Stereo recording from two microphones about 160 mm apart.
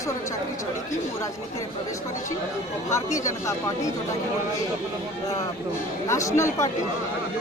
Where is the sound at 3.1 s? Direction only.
20° left (ahead or behind).